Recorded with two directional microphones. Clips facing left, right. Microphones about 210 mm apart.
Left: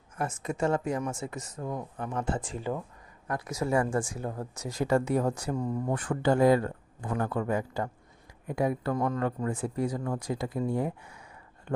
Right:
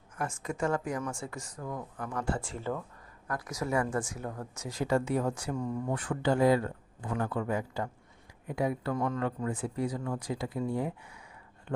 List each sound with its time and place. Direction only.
0.2 s speech: 20° left (ahead or behind); by 11.2 s 45° left (ahead or behind)